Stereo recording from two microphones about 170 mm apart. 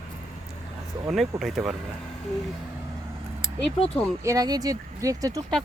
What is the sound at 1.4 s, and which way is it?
Speech, centre (ahead or behind).